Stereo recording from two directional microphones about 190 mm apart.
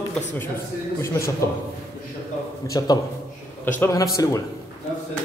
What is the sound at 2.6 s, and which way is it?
A man's voice, 20° left (ahead or behind).